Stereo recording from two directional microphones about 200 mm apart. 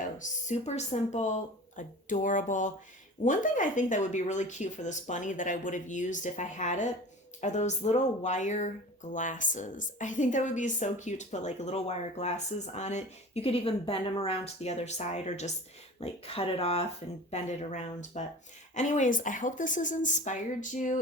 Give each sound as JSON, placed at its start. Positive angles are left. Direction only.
{"t": 0.2, "sound": "a woman's voice", "side_deg": 35}